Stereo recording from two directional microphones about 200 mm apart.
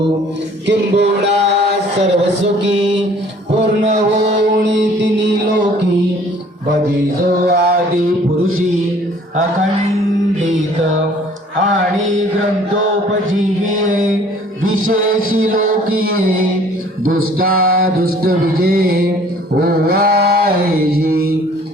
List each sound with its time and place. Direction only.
0.7 s music: 60° right (ahead or behind)
3.8 s speech: 35° right (ahead or behind)
4.7 s music: 65° right (ahead or behind)
7.4 s music: 50° right (ahead or behind)
14.8 s music: 45° right (ahead or behind)
17.3 s music: 45° right (ahead or behind)
19.5 s mantra: 50° right (ahead or behind)